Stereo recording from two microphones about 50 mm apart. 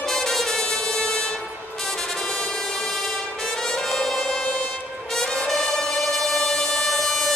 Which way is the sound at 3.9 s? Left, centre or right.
Centre.